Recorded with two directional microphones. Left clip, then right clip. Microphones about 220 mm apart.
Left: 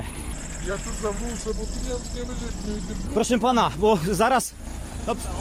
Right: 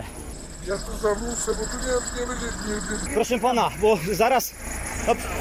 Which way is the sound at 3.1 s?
30° left (ahead or behind).